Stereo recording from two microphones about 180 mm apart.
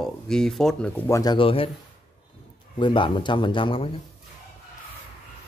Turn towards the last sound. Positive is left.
turn(degrees=30)  # may be behind; listen again after turning